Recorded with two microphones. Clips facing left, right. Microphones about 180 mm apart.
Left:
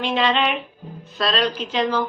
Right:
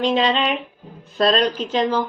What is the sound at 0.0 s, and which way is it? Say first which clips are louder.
Speech: right 2 dB; 40° right (ahead or behind).